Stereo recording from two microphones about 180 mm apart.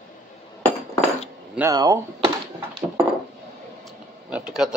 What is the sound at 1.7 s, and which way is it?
Speech, 20° right (ahead or behind).